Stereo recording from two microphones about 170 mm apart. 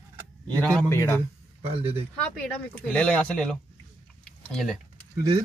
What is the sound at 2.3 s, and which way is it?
Speech, 5° left (ahead or behind).